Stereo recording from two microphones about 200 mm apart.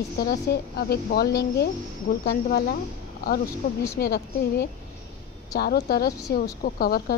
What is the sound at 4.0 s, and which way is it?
A woman's voice, 50° left (ahead or behind).